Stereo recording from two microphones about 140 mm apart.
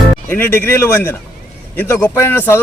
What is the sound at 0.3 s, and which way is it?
A man's voice, 15° left (ahead or behind).